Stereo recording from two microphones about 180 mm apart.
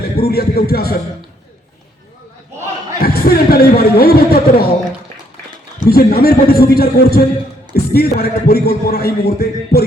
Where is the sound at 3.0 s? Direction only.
60° left (ahead or behind).